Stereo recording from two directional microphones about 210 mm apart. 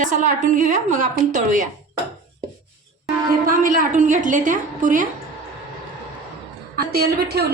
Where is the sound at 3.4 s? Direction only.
40° right (ahead or behind).